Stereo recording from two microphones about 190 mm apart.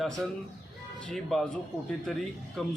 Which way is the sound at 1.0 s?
5° left (ahead or behind).